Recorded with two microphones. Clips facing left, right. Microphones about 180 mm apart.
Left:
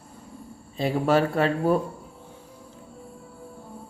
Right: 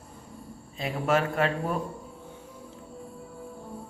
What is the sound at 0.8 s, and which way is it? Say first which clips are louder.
A man's voice: left 5 dB; 35° left (ahead or behind).